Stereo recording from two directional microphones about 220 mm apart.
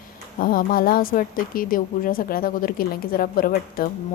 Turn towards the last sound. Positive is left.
turn(degrees=40)  # may be behind; listen again after turning